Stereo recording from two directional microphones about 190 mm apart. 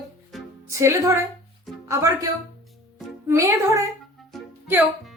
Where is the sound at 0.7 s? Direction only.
15° right (ahead or behind).